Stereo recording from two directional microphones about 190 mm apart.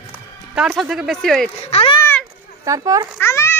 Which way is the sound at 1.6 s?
30° left (ahead or behind).